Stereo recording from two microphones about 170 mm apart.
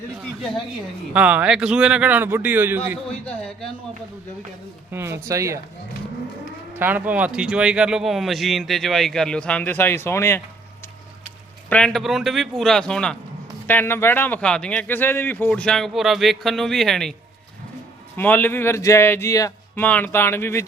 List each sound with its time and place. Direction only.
1.1 s a man's voice: 5° right (ahead or behind)
3.1 s a man's voice: 5° left (ahead or behind)
4.9 s a man's voice: 15° right (ahead or behind)
6.7 s speech: 10° right (ahead or behind); by 10.4 s 15° left (ahead or behind)
11.7 s a man's voice: 5° left (ahead or behind)
18.2 s a man's voice: 10° left (ahead or behind)